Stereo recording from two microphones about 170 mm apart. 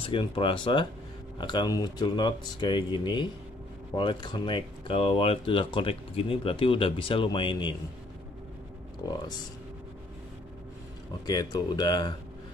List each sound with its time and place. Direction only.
0.0 s speech: 30° left (ahead or behind)
9.0 s speech: 25° left (ahead or behind)
11.2 s speech: 25° left (ahead or behind)